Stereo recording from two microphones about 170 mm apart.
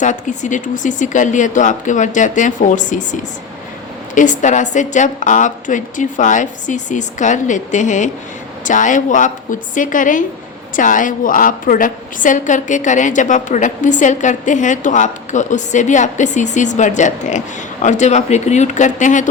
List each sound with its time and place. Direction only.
0.0 s a woman's voice: 45° left (ahead or behind)